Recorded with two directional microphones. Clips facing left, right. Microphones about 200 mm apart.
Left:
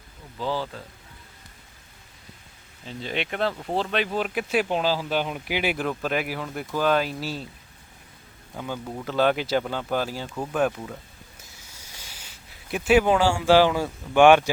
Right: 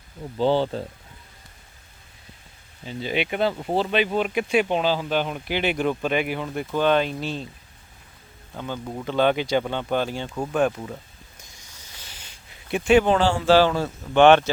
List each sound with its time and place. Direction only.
0.3 s speech: 30° right (ahead or behind)
2.8 s speech: 5° right (ahead or behind)
8.5 s speech: 5° left (ahead or behind)
11.5 s speech: 10° left (ahead or behind)